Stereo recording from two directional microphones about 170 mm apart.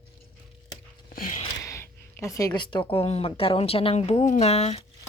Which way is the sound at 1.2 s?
55° left (ahead or behind).